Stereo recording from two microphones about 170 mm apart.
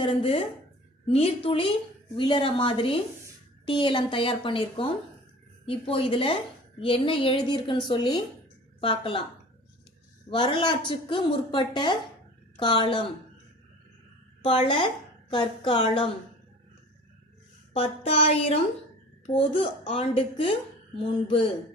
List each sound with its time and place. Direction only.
0.0 s a woman's voice: 35° left (ahead or behind)
10.3 s a woman's voice: 30° left (ahead or behind)
14.4 s a woman's voice: 30° left (ahead or behind)
17.7 s a woman's voice: 35° left (ahead or behind)